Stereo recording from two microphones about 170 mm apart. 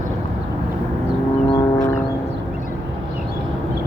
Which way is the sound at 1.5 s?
20° left (ahead or behind).